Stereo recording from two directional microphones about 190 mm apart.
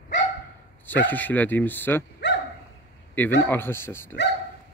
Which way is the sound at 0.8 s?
10° left (ahead or behind).